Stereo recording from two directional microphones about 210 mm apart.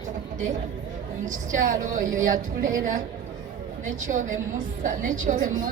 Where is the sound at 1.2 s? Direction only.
35° right (ahead or behind).